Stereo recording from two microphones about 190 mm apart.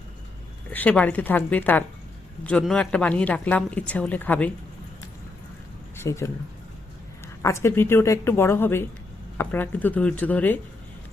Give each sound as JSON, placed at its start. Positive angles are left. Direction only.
{"t": 0.7, "sound": "speech", "side_deg": 10}
{"t": 6.0, "sound": "speech", "side_deg": 15}
{"t": 7.4, "sound": "speech", "side_deg": 15}